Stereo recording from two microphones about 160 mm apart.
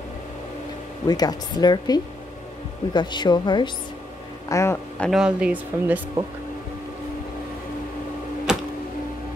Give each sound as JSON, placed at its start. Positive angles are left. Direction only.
{"t": 1.0, "sound": "speech", "side_deg": 25}
{"t": 4.5, "sound": "speech", "side_deg": 20}
{"t": 5.0, "sound": "speech", "side_deg": -5}
{"t": 8.5, "sound": "music", "side_deg": -5}